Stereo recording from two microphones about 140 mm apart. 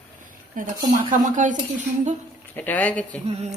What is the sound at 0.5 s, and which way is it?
Speech, 65° right (ahead or behind).